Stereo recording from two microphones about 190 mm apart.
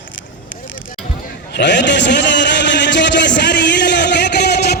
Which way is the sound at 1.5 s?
65° left (ahead or behind).